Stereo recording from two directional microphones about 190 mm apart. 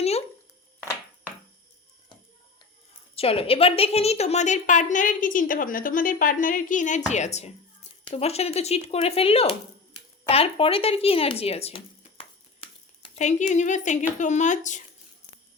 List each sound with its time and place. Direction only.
3.2 s a woman's voice: 30° left (ahead or behind)
13.1 s a woman's voice: 40° left (ahead or behind)